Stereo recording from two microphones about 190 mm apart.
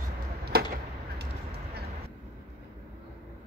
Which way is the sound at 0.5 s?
55° right (ahead or behind).